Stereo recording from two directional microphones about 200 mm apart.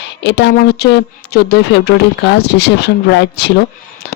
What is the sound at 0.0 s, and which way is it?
Speech, 60° left (ahead or behind).